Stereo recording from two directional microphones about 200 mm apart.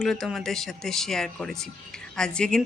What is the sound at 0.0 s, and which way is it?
Speech, centre (ahead or behind).